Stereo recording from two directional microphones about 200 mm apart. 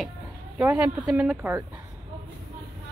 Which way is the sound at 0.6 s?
10° right (ahead or behind).